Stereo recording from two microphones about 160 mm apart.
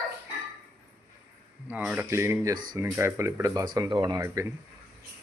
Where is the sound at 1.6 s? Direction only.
10° right (ahead or behind); by 4.2 s 30° right (ahead or behind).